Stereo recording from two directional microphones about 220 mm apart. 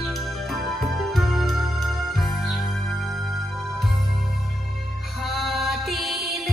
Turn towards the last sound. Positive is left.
turn(degrees=0)  # may be behind; listen again after turning